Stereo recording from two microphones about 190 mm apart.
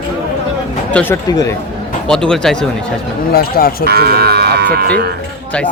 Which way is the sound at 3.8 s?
55° right (ahead or behind).